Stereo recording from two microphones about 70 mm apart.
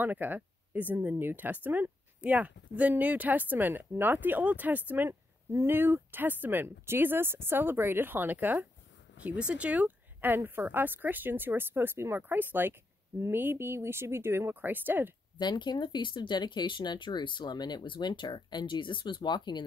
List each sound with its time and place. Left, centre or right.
0.0 s speech: right
5.5 s speech: right
9.2 s speech: centre
15.3 s speech: left